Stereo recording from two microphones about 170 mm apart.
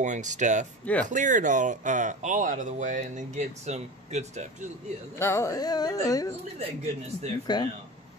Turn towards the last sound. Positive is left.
turn(degrees=25)  # may be behind; listen again after turning